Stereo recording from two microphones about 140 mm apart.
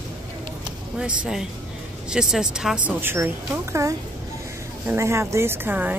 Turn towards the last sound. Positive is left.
turn(degrees=-15)  # may be behind; listen again after turning